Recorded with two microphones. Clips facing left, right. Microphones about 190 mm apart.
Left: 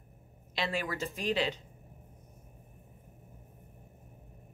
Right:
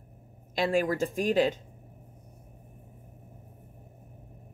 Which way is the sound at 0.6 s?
45° right (ahead or behind).